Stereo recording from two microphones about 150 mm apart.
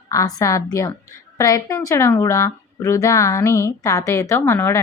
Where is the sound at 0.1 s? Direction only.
25° left (ahead or behind).